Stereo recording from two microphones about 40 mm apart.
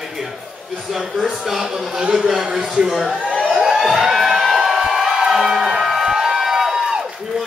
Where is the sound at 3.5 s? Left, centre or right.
Centre.